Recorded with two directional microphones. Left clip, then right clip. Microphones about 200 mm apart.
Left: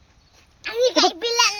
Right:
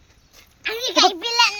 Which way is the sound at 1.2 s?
35° left (ahead or behind).